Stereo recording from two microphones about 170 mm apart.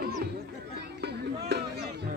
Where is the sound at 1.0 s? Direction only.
80° right.